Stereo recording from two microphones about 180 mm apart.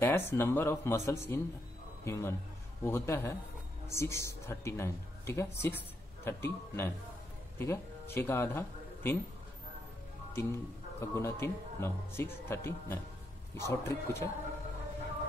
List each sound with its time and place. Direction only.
0.0 s a man's voice: 15° left (ahead or behind)
10.3 s a man's voice: 15° left (ahead or behind)